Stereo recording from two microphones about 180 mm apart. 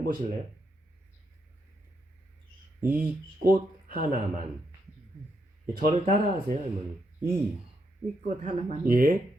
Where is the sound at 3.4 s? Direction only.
50° right (ahead or behind).